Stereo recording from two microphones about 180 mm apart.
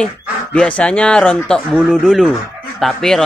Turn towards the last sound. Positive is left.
turn(degrees=0)  # may be behind; listen again after turning